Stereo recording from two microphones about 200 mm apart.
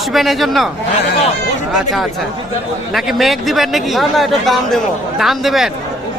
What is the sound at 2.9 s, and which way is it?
A man's voice, centre (ahead or behind).